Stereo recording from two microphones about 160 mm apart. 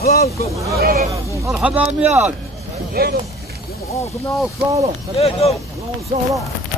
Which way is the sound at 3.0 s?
70° right (ahead or behind).